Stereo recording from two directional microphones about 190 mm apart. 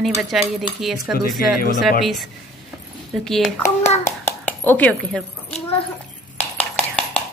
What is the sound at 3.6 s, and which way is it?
Speech, 35° left (ahead or behind).